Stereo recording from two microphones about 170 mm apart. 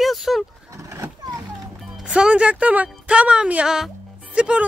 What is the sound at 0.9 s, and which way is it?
Vehicle, 20° right (ahead or behind).